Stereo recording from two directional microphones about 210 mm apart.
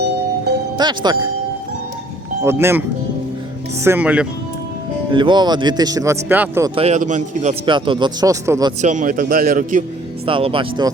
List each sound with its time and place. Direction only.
0.8 s speech: 20° right (ahead or behind)
2.4 s speech: 10° right (ahead or behind)
3.8 s speech: 10° right (ahead or behind)
5.1 s speech: 20° right (ahead or behind)
6.7 s a man's voice: 30° right (ahead or behind)
7.6 s speech: 25° right (ahead or behind)
8.8 s a man's voice: 35° right (ahead or behind)
10.2 s speech: 25° right (ahead or behind)